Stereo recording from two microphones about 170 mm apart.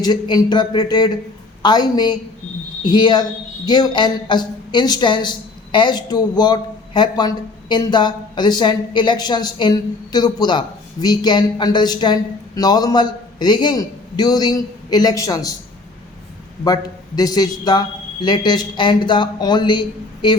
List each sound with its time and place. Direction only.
0.0 s a woman's voice: 25° left (ahead or behind)
16.6 s a woman's voice: 20° left (ahead or behind)